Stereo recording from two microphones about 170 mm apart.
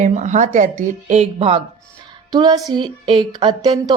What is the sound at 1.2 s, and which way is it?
Speech, 35° right (ahead or behind).